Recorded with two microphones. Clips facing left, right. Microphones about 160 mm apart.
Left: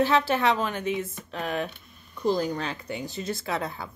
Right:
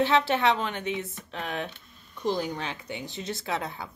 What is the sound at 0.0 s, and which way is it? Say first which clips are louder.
Speech: left 1 dB; 20° right (ahead or behind).